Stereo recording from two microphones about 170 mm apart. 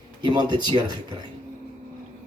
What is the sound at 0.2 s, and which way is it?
Speech, 25° right (ahead or behind).